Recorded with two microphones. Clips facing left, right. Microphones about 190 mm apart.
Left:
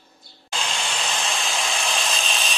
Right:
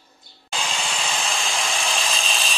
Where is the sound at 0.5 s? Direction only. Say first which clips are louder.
Right 1 dB; 5° right (ahead or behind).